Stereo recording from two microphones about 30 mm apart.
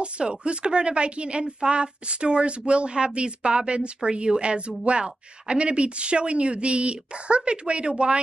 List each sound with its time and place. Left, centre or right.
0.0 s a woman's voice: right